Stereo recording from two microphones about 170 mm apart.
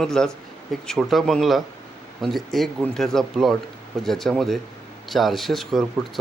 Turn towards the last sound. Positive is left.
turn(degrees=0)  # may be behind; listen again after turning